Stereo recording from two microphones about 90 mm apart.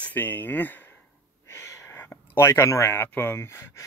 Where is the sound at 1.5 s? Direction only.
30° left (ahead or behind).